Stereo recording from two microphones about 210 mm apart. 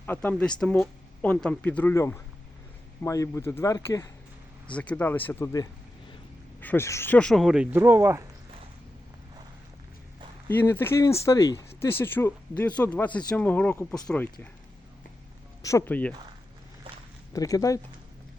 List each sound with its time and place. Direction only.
0.0 s speech: 10° left (ahead or behind); by 8.2 s 10° right (ahead or behind)
10.5 s speech: 10° left (ahead or behind)
15.6 s speech: 10° left (ahead or behind)
17.3 s speech: 15° left (ahead or behind)